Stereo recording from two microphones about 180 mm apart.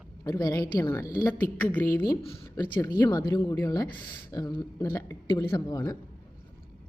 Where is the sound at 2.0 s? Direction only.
30° left (ahead or behind).